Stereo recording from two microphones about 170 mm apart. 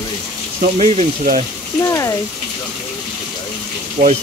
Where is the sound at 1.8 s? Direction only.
20° left (ahead or behind).